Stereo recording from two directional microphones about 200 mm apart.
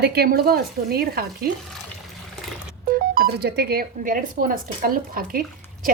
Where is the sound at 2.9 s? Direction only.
45° right (ahead or behind).